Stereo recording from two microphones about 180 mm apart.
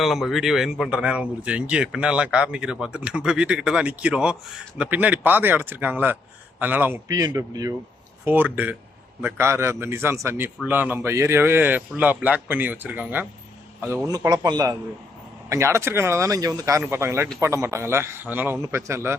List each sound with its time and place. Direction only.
0.0 s a man's voice: centre (ahead or behind)